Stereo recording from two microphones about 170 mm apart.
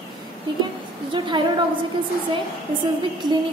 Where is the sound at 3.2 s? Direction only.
25° right (ahead or behind).